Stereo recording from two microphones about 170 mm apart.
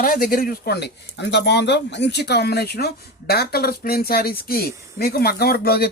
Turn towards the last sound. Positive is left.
turn(degrees=65)  # may be behind; listen again after turning